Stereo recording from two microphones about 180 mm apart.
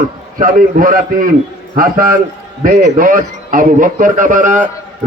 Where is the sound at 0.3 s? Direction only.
50° right (ahead or behind).